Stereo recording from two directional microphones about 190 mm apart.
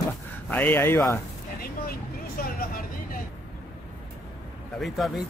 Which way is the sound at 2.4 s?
50° left (ahead or behind).